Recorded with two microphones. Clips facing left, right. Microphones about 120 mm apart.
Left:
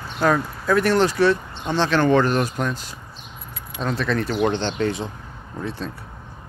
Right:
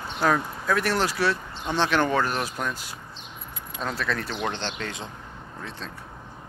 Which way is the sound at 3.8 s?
5° right (ahead or behind).